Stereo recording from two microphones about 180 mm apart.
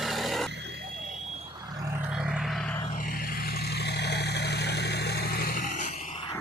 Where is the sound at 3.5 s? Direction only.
65° left (ahead or behind); by 5.9 s 45° left (ahead or behind).